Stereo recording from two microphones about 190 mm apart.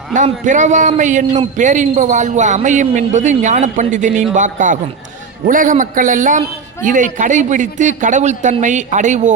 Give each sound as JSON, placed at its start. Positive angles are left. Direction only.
{"t": 0.1, "sound": "a man's voice", "side_deg": -40}